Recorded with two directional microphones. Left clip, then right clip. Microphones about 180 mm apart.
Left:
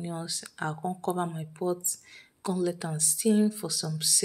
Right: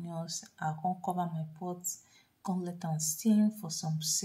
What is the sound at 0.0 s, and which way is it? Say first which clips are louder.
Speech: left 6 dB; 15° left (ahead or behind).